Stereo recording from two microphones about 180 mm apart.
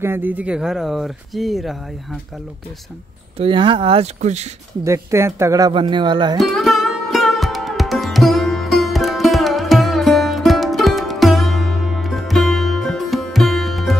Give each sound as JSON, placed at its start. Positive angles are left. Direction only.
{"t": 0.0, "sound": "speech", "side_deg": -10}
{"t": 3.3, "sound": "speech", "side_deg": -30}
{"t": 4.8, "sound": "speech", "side_deg": -15}
{"t": 5.7, "sound": "speech", "side_deg": -25}
{"t": 6.4, "sound": "music", "side_deg": 0}